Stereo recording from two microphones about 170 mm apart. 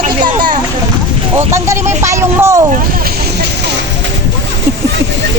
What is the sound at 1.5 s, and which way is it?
Speech, 15° right (ahead or behind).